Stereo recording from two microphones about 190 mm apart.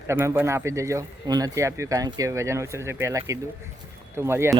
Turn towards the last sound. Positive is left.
turn(degrees=-15)  # may be behind; listen again after turning